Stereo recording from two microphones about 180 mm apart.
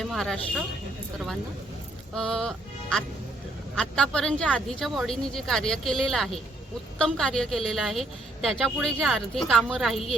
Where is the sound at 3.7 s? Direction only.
5° left (ahead or behind).